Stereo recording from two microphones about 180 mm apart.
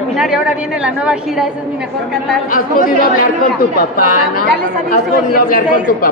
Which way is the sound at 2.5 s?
50° left (ahead or behind).